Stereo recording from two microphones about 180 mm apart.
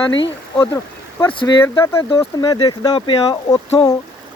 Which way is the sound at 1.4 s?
20° left (ahead or behind).